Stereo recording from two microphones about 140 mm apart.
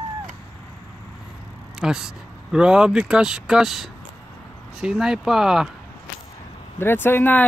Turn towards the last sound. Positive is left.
turn(degrees=15)  # may be behind; listen again after turning